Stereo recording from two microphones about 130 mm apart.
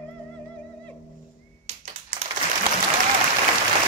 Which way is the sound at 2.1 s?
85° right.